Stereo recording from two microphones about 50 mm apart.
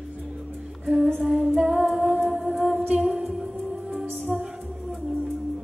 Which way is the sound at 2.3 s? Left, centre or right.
Centre.